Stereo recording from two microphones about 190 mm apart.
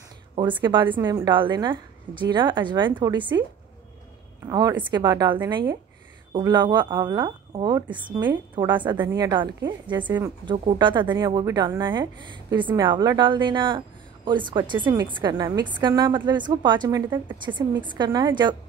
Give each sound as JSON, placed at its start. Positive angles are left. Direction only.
{"t": 0.4, "sound": "a woman's voice", "side_deg": -25}
{"t": 4.5, "sound": "a woman's voice", "side_deg": -20}
{"t": 10.0, "sound": "a woman's voice", "side_deg": -10}
{"t": 10.4, "sound": "a woman's voice", "side_deg": -25}